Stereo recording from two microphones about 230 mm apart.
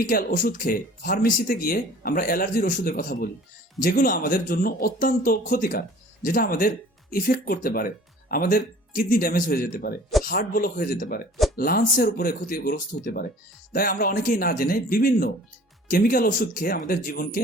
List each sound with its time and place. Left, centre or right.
0.1 s speech: left